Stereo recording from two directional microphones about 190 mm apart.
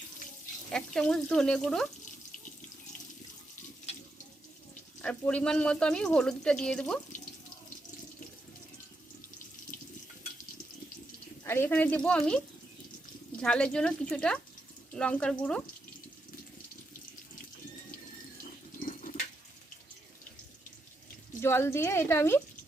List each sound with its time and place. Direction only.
0.7 s speech: 5° left (ahead or behind)
5.0 s speech: 5° left (ahead or behind)
11.4 s speech: 10° left (ahead or behind)
13.4 s speech: 5° left (ahead or behind)
18.8 s water: 45° left (ahead or behind)
21.4 s speech: 15° left (ahead or behind)